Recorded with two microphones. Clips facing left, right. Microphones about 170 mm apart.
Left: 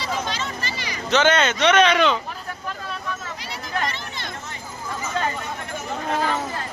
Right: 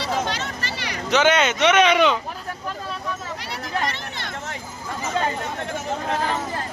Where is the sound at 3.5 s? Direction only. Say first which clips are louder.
Right 1 dB; 65° right (ahead or behind).